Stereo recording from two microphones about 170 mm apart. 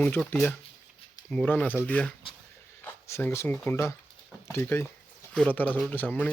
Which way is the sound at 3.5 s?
5° left (ahead or behind).